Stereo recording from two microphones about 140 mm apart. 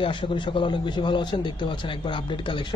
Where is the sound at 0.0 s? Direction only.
40° left (ahead or behind).